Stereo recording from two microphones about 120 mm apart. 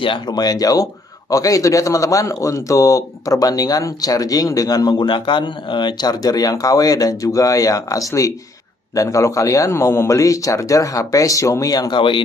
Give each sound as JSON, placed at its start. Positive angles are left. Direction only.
{"t": 0.0, "sound": "a man's voice", "side_deg": 40}